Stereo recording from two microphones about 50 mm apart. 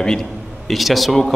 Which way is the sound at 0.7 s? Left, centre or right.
Centre.